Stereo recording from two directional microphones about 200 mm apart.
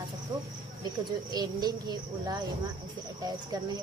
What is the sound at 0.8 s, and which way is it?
Speech, 20° right (ahead or behind).